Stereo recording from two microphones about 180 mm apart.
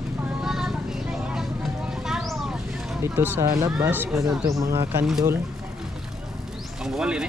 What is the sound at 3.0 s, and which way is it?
Speech, 15° right (ahead or behind).